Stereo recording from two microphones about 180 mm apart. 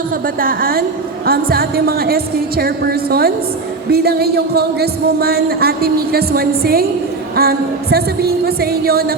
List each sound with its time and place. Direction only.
0.3 s a woman's voice: 55° right (ahead or behind)